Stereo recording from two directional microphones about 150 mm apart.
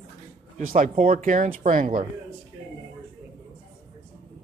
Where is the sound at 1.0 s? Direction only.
60° right (ahead or behind).